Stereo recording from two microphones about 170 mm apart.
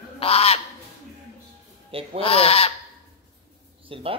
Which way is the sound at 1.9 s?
35° right (ahead or behind).